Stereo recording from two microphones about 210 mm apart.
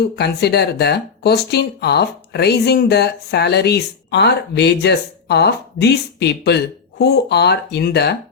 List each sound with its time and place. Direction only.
0.0 s speech: 50° left (ahead or behind)